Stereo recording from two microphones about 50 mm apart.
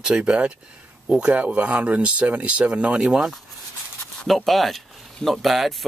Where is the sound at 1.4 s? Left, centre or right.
Right.